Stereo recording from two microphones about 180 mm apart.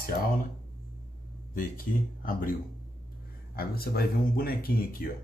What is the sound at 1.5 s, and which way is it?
Speech, 50° left (ahead or behind).